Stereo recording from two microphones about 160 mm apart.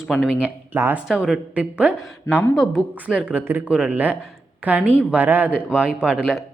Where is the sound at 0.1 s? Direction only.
5° right (ahead or behind).